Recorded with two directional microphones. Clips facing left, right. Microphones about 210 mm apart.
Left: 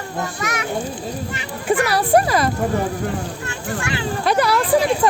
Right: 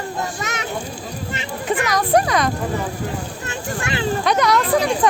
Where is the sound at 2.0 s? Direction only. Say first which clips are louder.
Left 1 dB; 5° left (ahead or behind).